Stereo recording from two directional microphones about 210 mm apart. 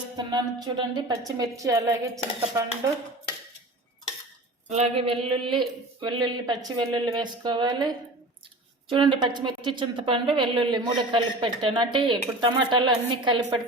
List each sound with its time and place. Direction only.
0.2 s speech: 20° right (ahead or behind)
4.7 s speech: 30° right (ahead or behind)